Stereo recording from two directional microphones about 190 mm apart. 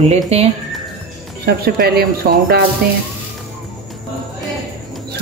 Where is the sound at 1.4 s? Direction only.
55° right (ahead or behind).